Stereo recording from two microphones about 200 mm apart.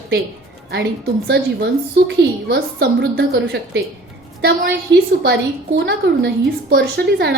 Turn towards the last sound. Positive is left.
turn(degrees=-55)  # may be behind; listen again after turning